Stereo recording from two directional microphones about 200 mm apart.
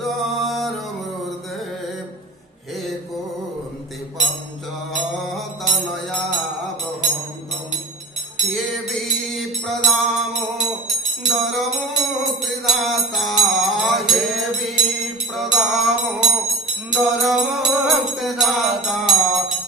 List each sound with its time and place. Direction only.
0.0 s music: centre (ahead or behind)
4.9 s mantra: centre (ahead or behind)
8.4 s music: centre (ahead or behind)